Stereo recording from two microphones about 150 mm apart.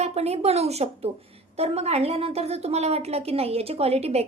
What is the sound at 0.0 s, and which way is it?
A woman's voice, 45° right (ahead or behind).